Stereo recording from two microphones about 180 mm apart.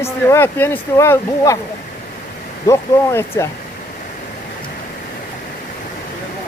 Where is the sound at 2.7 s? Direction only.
15° left (ahead or behind).